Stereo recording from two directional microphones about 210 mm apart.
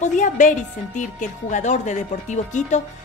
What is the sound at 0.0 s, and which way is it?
A woman's voice, 35° left (ahead or behind).